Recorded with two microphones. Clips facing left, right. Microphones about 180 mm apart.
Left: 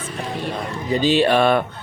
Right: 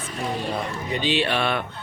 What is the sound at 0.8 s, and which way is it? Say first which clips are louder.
Speech: left 8 dB; 40° left (ahead or behind).